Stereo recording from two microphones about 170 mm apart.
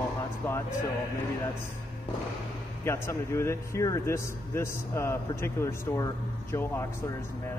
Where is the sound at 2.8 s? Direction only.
15° left (ahead or behind).